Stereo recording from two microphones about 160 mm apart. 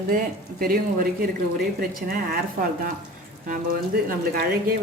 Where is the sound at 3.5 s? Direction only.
65° right (ahead or behind).